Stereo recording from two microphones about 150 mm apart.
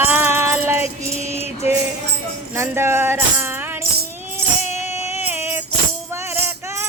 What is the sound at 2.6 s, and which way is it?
Tambourine, 15° right (ahead or behind).